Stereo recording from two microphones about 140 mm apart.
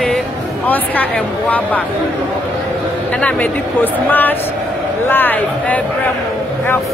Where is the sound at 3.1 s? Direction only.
10° left (ahead or behind).